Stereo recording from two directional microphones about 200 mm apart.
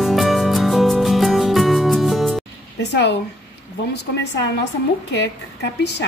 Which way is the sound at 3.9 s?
60° left (ahead or behind).